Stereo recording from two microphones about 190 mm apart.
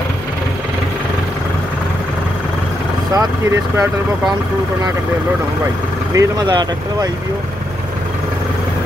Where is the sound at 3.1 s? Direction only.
15° right (ahead or behind).